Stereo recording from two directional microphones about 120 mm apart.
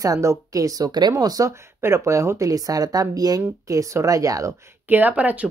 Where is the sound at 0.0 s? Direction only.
25° right (ahead or behind).